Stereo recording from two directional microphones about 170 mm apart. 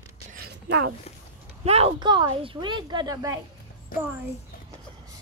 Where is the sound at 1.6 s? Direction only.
35° right (ahead or behind); by 3.3 s 20° right (ahead or behind).